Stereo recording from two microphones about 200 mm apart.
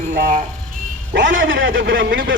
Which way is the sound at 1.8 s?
45° right (ahead or behind).